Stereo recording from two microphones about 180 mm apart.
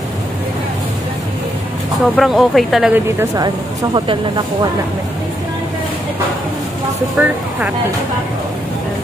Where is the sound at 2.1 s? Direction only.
Centre (ahead or behind).